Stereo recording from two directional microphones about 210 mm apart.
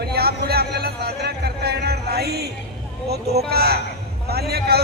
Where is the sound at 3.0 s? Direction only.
50° right (ahead or behind).